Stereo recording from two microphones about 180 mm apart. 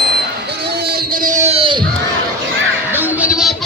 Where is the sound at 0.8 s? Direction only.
60° right (ahead or behind); by 1.8 s 30° right (ahead or behind).